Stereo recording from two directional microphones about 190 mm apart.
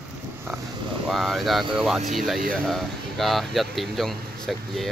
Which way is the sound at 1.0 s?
Centre (ahead or behind).